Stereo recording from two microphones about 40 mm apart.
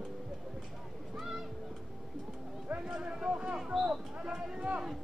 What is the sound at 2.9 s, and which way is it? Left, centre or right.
Speech, centre.